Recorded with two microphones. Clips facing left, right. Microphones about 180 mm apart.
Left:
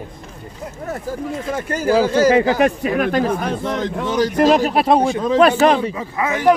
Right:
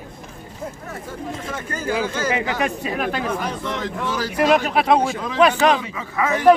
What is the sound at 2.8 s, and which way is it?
A man's voice, 55° left (ahead or behind).